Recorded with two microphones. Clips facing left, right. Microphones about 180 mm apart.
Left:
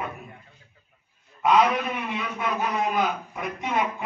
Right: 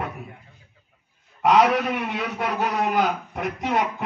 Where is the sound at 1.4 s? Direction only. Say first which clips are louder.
Right 3 dB; 75° right (ahead or behind).